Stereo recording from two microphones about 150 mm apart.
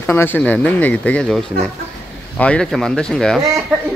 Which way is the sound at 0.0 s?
15° left (ahead or behind).